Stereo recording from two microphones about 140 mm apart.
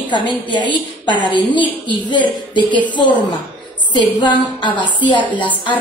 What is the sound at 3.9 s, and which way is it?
A woman's voice, 35° left (ahead or behind).